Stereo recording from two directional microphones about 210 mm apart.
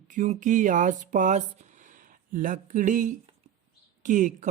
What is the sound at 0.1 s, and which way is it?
Speech, 35° right (ahead or behind).